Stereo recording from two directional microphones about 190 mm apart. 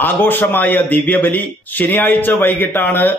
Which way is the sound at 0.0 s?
10° left (ahead or behind).